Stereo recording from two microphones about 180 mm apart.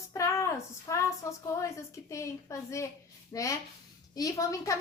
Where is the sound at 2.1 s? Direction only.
15° left (ahead or behind).